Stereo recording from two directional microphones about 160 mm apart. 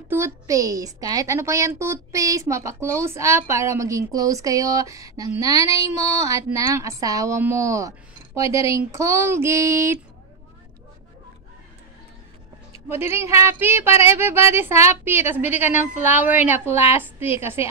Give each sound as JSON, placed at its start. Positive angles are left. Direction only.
{"t": 0.1, "sound": "a woman's voice", "side_deg": -20}
{"t": 12.8, "sound": "speech", "side_deg": -15}